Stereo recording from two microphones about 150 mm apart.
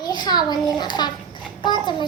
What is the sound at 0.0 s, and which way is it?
A child's voice, 25° left (ahead or behind).